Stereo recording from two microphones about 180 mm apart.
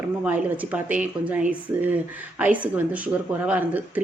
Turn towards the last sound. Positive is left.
turn(degrees=-10)  # may be behind; listen again after turning